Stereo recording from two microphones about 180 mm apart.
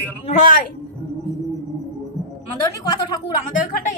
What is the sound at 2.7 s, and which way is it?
Speech, 20° left (ahead or behind).